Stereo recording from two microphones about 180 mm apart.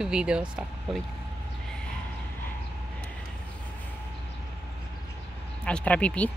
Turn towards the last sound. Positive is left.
turn(degrees=5)  # may be behind; listen again after turning